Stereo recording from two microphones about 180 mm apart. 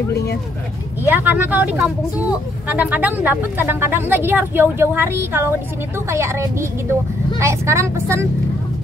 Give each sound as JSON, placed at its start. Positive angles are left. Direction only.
{"t": 0.1, "sound": "speech", "side_deg": 65}
{"t": 1.0, "sound": "speech", "side_deg": -10}